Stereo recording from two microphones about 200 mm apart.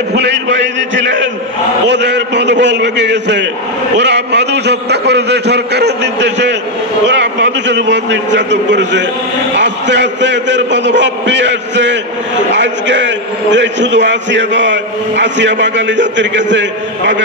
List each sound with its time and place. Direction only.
0.1 s a man's voice: 60° right (ahead or behind)